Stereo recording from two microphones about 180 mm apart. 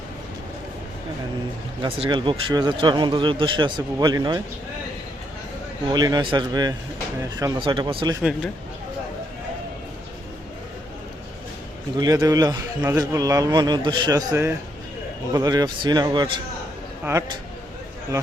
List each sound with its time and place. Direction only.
1.8 s a man's voice: 25° right (ahead or behind)
5.9 s a man's voice: 25° right (ahead or behind)
11.9 s a man's voice: 20° right (ahead or behind)